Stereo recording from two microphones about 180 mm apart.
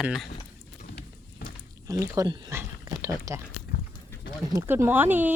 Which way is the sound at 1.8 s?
15° right (ahead or behind).